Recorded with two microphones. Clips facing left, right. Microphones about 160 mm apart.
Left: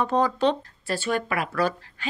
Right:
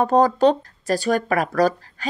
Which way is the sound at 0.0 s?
40° right (ahead or behind).